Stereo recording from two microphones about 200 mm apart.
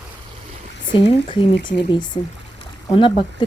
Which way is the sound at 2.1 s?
20° left (ahead or behind).